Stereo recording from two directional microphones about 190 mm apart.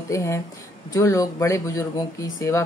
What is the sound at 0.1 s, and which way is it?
Speech, 15° left (ahead or behind).